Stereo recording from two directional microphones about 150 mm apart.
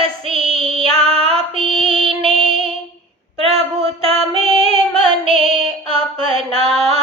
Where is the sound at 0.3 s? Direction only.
40° right (ahead or behind).